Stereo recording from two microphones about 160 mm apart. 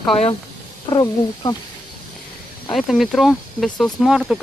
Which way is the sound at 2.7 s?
Centre (ahead or behind).